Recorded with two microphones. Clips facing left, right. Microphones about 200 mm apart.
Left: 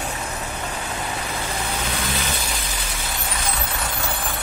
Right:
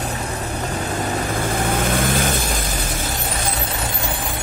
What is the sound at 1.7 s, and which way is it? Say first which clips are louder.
Vehicle: right 8 dB; 50° right (ahead or behind).